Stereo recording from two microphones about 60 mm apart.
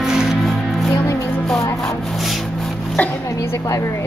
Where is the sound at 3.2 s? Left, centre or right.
Left.